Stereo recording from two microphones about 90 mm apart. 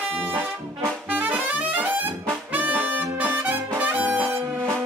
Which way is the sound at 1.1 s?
20° right (ahead or behind).